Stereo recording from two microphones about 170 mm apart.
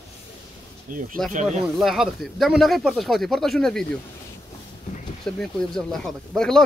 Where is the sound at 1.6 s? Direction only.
Centre (ahead or behind).